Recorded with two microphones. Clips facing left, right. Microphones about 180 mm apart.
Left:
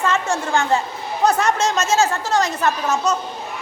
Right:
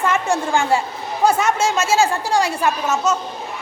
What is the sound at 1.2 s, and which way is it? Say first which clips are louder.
A woman's voice: right 1 dB; 5° right (ahead or behind).